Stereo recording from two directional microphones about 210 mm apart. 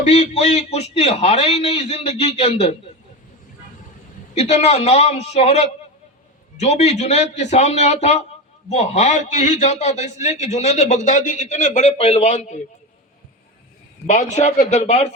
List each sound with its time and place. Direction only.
0.0 s a man's voice: 30° left (ahead or behind)
4.4 s a man's voice: 30° left (ahead or behind)
14.1 s a man's voice: 35° left (ahead or behind)